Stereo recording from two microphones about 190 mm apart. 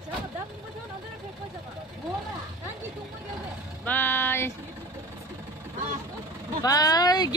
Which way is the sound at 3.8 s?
10° left (ahead or behind).